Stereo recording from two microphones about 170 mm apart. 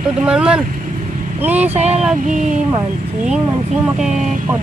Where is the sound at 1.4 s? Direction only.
10° right (ahead or behind).